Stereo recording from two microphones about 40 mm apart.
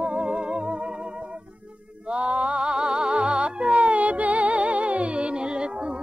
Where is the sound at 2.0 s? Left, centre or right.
Right.